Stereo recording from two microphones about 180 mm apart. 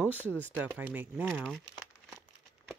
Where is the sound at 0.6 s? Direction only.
10° right (ahead or behind).